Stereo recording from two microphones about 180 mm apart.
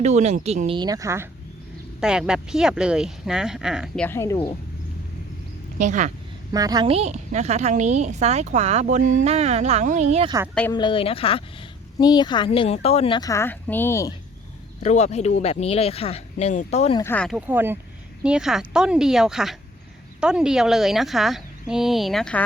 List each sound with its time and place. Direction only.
0.0 s a woman's voice: 40° right (ahead or behind)
0.8 s speech: 20° right (ahead or behind)
2.0 s a woman's voice: 5° right (ahead or behind)
4.0 s a woman's voice: 15° left (ahead or behind)
5.8 s speech: 45° right (ahead or behind)
6.5 s a woman's voice: 20° right (ahead or behind); by 10.2 s 40° right (ahead or behind)
10.7 s speech: 25° left (ahead or behind)
13.1 s a woman's voice: 20° left (ahead or behind)
14.8 s speech: 40° left (ahead or behind)
17.0 s a woman's voice: 10° left (ahead or behind)
17.2 s a woman's voice: 10° right (ahead or behind)